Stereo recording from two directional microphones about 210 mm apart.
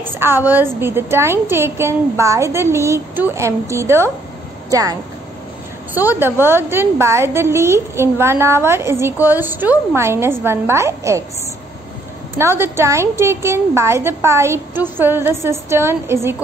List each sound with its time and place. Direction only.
0.2 s a woman's voice: 10° right (ahead or behind)
5.9 s a woman's voice: 10° right (ahead or behind)
12.4 s a woman's voice: 10° right (ahead or behind)